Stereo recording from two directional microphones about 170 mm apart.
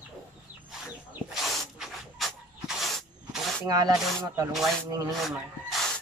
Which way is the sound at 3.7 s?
20° right (ahead or behind).